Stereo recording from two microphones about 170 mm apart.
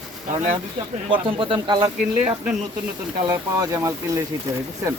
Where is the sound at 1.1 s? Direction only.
30° right (ahead or behind).